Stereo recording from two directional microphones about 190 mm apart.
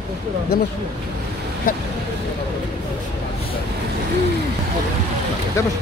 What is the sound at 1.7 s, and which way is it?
Speech, 45° left (ahead or behind).